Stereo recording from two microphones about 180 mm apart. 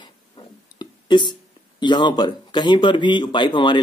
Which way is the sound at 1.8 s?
25° left (ahead or behind).